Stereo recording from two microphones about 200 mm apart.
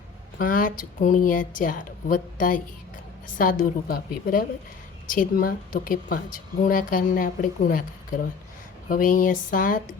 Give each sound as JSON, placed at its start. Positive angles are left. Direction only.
{"t": 0.3, "sound": "speech", "side_deg": 40}